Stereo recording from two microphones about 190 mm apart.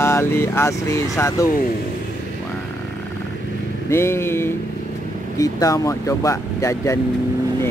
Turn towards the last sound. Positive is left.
turn(degrees=15)  # may be behind; listen again after turning